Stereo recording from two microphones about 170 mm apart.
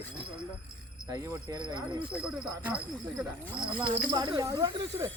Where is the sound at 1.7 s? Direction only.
30° right (ahead or behind).